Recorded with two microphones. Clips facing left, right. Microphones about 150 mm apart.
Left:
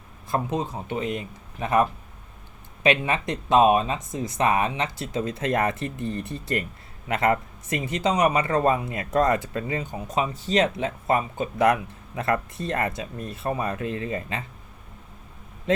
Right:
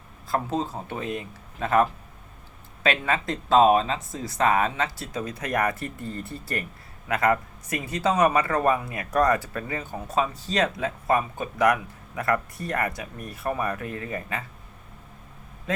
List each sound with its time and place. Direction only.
0.3 s speech: 20° left (ahead or behind)